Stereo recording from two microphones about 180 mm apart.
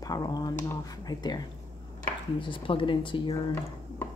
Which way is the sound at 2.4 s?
30° left (ahead or behind).